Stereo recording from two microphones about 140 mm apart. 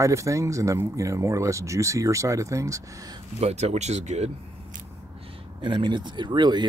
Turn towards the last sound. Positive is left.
turn(degrees=-30)  # may be behind; listen again after turning